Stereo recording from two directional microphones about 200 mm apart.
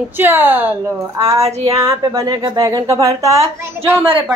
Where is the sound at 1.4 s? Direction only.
30° right (ahead or behind).